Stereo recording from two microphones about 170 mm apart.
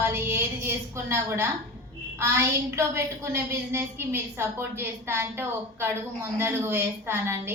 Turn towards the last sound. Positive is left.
turn(degrees=-15)  # may be behind; listen again after turning